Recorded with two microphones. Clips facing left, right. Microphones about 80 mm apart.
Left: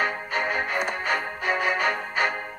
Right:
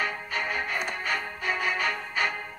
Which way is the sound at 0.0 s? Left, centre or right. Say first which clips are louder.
Left 4 dB; left.